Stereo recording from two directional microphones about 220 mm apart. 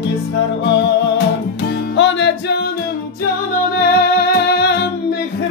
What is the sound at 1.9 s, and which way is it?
Music, 55° left (ahead or behind).